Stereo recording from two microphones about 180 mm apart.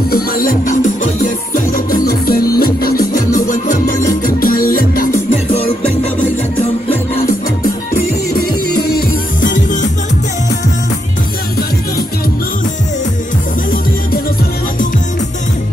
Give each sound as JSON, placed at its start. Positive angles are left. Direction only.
{"t": 0.1, "sound": "music", "side_deg": 55}
{"t": 8.7, "sound": "music", "side_deg": 60}